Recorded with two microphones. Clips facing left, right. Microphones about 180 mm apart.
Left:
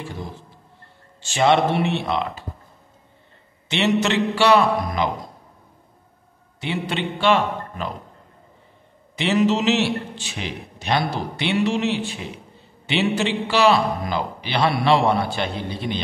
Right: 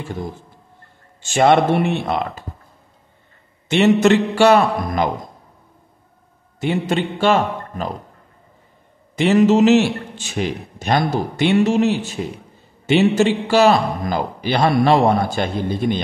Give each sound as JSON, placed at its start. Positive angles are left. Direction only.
{"t": 1.2, "sound": "a man's voice", "side_deg": -50}
{"t": 3.6, "sound": "a man's voice", "side_deg": -50}
{"t": 6.6, "sound": "a man's voice", "side_deg": -45}
{"t": 9.1, "sound": "a man's voice", "side_deg": -45}